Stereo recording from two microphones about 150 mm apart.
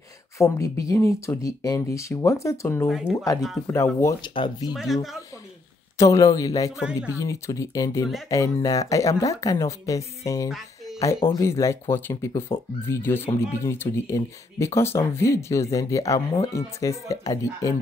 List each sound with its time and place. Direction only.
0.4 s speech: 20° left (ahead or behind)
2.9 s speech: centre (ahead or behind)
3.6 s speech: 20° left (ahead or behind)
4.7 s speech: centre (ahead or behind)
5.9 s speech: 20° left (ahead or behind)
6.8 s speech: 5° right (ahead or behind)
7.2 s speech: 20° left (ahead or behind)